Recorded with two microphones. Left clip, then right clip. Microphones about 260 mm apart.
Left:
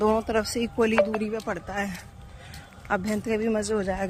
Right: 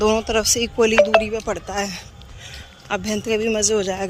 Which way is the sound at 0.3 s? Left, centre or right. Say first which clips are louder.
Right 7 dB; centre.